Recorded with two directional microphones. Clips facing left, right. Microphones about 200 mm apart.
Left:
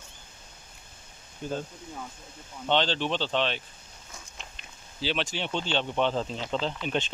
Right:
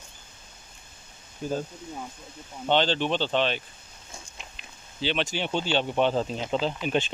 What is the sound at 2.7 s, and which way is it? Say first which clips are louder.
Speech: right 3 dB; centre (ahead or behind).